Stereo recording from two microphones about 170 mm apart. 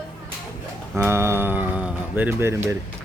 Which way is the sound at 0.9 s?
10° right (ahead or behind).